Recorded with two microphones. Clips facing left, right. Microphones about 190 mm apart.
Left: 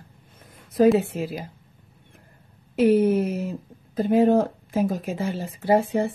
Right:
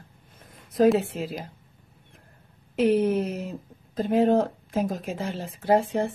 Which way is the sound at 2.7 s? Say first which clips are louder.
Left 3 dB; 5° left (ahead or behind).